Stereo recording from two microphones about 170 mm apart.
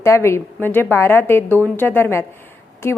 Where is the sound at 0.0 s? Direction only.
15° left (ahead or behind).